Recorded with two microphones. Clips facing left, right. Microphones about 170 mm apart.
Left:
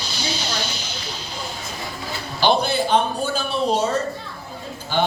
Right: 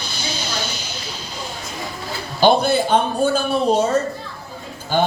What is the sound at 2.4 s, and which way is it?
Speech, 50° right (ahead or behind).